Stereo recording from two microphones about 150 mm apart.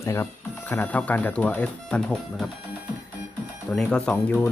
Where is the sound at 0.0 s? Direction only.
20° left (ahead or behind).